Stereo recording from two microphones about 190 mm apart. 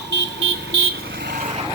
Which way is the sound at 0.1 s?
70° right (ahead or behind).